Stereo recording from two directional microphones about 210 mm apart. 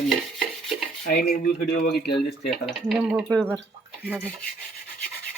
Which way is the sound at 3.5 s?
5° left (ahead or behind).